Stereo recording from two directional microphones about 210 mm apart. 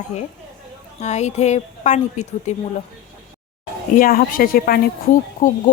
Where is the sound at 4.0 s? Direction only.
40° left (ahead or behind).